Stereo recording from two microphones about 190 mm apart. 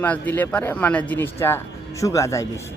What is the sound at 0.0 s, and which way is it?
Speech, 10° left (ahead or behind).